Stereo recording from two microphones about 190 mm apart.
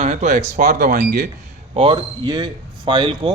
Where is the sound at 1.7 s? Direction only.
30° right (ahead or behind).